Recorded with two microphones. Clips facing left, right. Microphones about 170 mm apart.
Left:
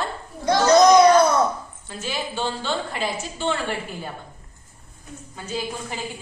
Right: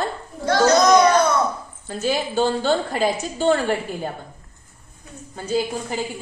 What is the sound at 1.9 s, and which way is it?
A woman's voice, 45° right (ahead or behind).